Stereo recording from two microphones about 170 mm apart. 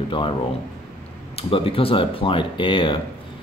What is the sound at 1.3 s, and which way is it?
Speech, 35° left (ahead or behind).